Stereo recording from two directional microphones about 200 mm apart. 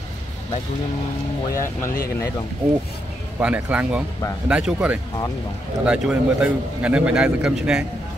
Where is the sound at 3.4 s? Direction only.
5° right (ahead or behind).